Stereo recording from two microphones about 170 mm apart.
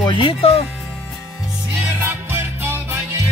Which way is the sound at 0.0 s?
30° left (ahead or behind).